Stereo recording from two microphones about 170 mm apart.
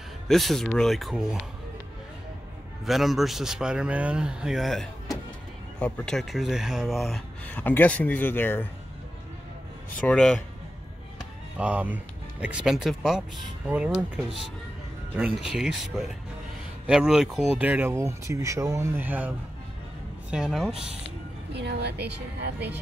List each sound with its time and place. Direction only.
0.3 s a man's voice: centre (ahead or behind)
2.8 s a man's voice: centre (ahead or behind)
9.8 s a man's voice: 5° left (ahead or behind)
11.5 s a man's voice: 10° right (ahead or behind)
21.5 s a woman's voice: 80° right